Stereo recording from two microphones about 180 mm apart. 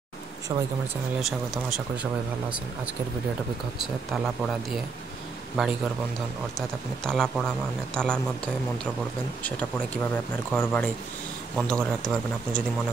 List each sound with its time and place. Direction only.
1.2 s speech: centre (ahead or behind)
3.7 s speech: centre (ahead or behind)
5.6 s speech: centre (ahead or behind)
7.1 s speech: 5° left (ahead or behind)
9.4 s speech: 10° left (ahead or behind)